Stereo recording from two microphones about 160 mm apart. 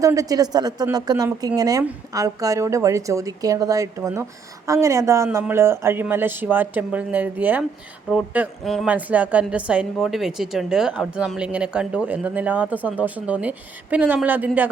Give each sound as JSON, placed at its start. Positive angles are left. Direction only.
{"t": 0.0, "sound": "a woman's voice", "side_deg": -20}
{"t": 8.6, "sound": "speech", "side_deg": 0}
{"t": 8.9, "sound": "a woman's voice", "side_deg": -10}